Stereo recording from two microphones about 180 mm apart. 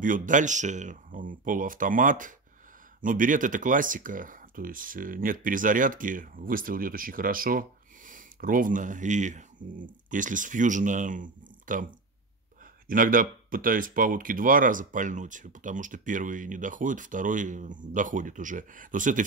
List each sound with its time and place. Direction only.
0.0 s speech: 45° right (ahead or behind)